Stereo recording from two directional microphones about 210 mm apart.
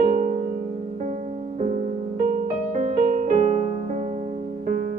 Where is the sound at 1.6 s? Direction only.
35° right (ahead or behind).